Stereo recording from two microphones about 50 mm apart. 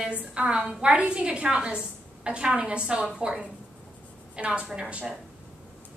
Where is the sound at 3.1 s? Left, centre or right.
Centre.